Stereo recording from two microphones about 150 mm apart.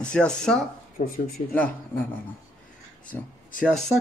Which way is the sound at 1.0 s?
65° left (ahead or behind).